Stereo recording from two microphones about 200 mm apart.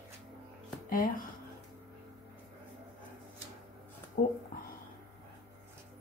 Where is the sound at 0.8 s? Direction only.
45° left (ahead or behind).